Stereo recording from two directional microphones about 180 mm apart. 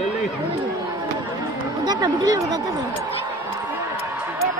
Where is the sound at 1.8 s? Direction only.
25° right (ahead or behind).